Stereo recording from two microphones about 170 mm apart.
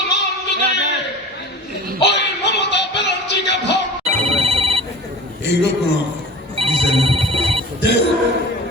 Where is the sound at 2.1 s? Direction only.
90° left.